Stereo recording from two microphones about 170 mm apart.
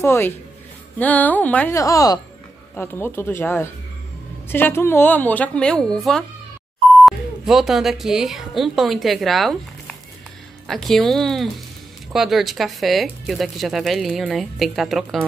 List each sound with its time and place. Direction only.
0.0 s a woman's voice: 15° left (ahead or behind)
1.8 s a woman's voice: 20° left (ahead or behind); by 15.2 s centre (ahead or behind)